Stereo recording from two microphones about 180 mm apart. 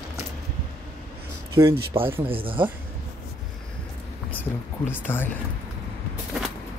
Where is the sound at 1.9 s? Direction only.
30° right (ahead or behind).